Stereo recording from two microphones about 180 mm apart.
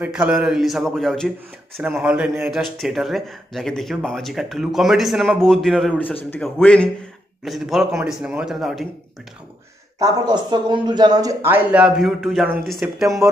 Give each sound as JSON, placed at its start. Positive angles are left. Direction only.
{"t": 0.0, "sound": "speech", "side_deg": -5}
{"t": 9.9, "sound": "speech", "side_deg": -20}